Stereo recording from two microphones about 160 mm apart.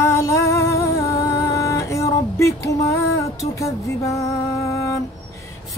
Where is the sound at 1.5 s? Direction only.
20° left (ahead or behind).